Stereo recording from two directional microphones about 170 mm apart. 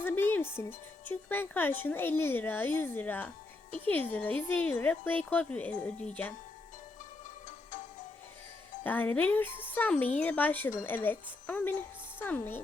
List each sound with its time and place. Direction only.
0.0 s speech: 10° left (ahead or behind)
7.4 s music: 50° left (ahead or behind)
8.8 s speech: 10° left (ahead or behind)